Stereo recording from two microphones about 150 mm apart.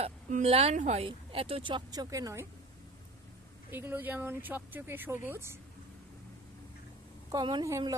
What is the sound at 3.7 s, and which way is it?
Speech, 15° right (ahead or behind).